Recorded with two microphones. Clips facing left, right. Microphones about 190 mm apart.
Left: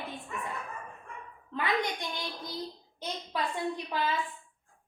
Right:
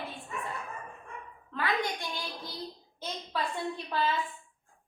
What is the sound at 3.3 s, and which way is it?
Speech, 20° left (ahead or behind).